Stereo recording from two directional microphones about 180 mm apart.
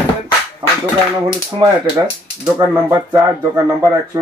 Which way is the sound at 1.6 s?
25° right (ahead or behind).